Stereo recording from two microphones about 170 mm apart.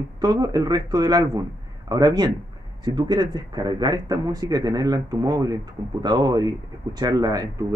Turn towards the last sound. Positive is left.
turn(degrees=-20)  # may be behind; listen again after turning